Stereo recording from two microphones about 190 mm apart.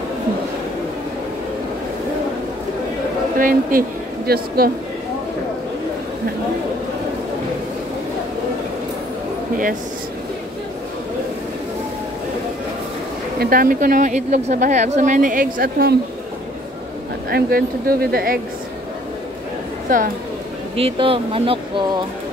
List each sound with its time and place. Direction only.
3.3 s a woman's voice: 45° right (ahead or behind)
13.4 s a woman's voice: 50° right (ahead or behind)
17.3 s a woman's voice: 50° right (ahead or behind)
20.7 s speech: 30° right (ahead or behind)